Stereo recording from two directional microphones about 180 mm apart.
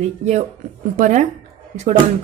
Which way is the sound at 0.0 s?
40° right (ahead or behind).